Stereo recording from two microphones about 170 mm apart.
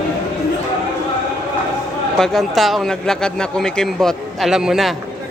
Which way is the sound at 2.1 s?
Centre (ahead or behind).